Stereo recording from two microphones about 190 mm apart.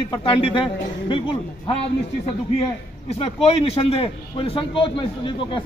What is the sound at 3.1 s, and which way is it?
A man's voice, 30° left (ahead or behind).